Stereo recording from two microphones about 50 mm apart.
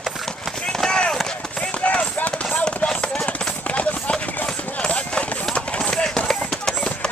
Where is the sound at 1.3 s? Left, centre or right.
Left.